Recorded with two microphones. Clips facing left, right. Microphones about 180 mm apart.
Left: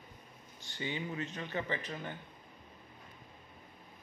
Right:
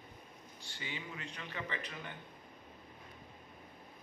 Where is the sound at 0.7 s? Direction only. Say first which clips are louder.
Left 8 dB; 35° left (ahead or behind).